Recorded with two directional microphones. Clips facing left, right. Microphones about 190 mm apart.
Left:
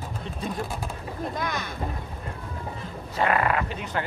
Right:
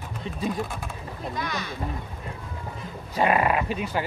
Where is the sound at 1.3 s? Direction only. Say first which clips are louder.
Right 2 dB; 50° left (ahead or behind).